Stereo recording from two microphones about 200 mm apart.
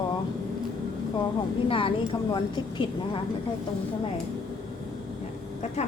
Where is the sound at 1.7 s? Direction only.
25° left (ahead or behind).